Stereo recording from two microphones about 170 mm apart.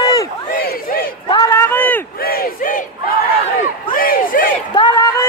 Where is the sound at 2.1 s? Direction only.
60° left (ahead or behind).